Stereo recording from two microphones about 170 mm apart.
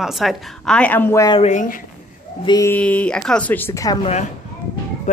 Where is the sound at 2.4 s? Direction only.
25° left (ahead or behind).